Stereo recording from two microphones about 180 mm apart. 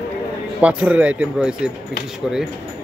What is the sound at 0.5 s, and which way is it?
Speech, 5° right (ahead or behind).